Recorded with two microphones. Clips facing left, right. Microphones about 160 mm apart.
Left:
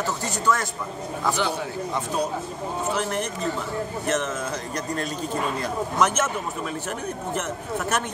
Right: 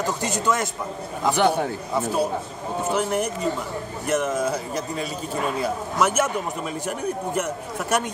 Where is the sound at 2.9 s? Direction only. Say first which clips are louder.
Right 6 dB; 10° right (ahead or behind).